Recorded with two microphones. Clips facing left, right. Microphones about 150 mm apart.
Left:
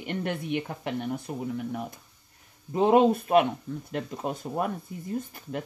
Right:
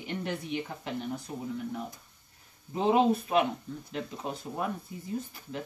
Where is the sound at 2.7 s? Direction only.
55° left (ahead or behind).